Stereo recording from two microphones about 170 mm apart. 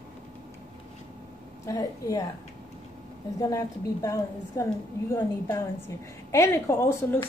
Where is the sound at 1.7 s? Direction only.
20° left (ahead or behind).